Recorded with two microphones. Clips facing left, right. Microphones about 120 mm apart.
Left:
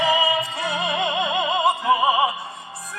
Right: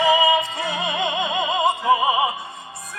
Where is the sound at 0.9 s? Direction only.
30° left (ahead or behind).